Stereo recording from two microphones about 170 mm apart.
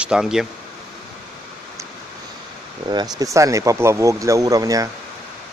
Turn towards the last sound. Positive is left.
turn(degrees=-20)  # may be behind; listen again after turning